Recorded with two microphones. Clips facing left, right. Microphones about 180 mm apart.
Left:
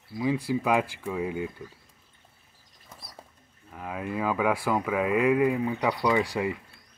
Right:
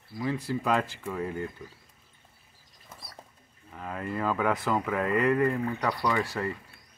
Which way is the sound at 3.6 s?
5° left (ahead or behind).